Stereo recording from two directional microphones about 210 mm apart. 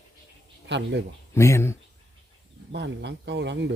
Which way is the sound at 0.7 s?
55° right (ahead or behind).